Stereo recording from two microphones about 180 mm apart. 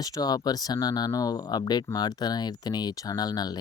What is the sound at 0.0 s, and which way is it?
Speech, 20° left (ahead or behind).